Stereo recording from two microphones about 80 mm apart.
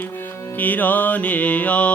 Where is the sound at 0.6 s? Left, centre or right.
Left.